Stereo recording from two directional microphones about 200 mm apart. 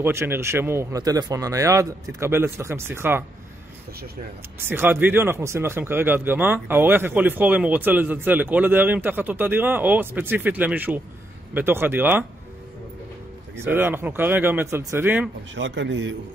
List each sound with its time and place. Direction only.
0.0 s speech: 10° right (ahead or behind)
4.6 s speech: 10° right (ahead or behind)
13.6 s speech: 10° right (ahead or behind)
15.5 s a man's voice: 65° right (ahead or behind)